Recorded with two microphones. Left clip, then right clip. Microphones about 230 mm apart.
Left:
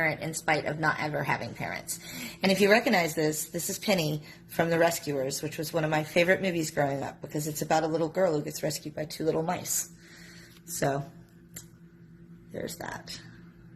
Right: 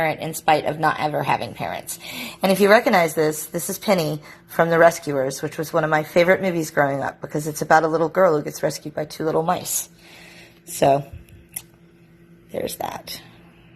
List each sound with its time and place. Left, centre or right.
0.0 s a woman's voice: centre
10.8 s a woman's voice: centre